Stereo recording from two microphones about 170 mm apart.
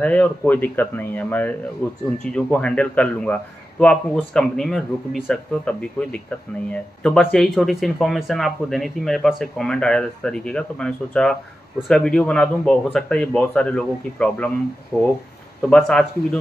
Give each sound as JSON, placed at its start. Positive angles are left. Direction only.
{"t": 0.0, "sound": "speech", "side_deg": 10}
{"t": 15.7, "sound": "speech", "side_deg": 5}